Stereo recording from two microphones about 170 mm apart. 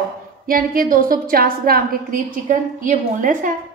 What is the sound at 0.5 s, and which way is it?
A woman's voice, 60° right (ahead or behind).